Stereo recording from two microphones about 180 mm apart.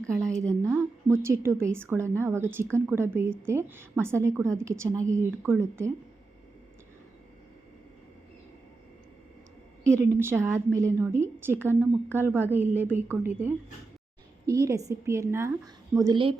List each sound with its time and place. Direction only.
0.2 s a woman's voice: 15° right (ahead or behind)
9.8 s a woman's voice: 15° right (ahead or behind)